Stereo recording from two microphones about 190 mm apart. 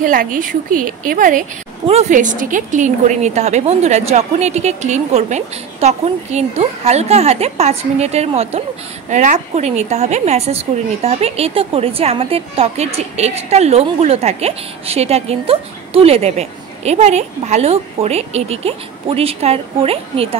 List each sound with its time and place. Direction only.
0.0 s a woman's voice: 45° right (ahead or behind); by 20.3 s 30° right (ahead or behind)